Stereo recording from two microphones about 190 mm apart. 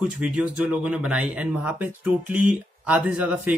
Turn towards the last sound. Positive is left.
turn(degrees=-5)  # may be behind; listen again after turning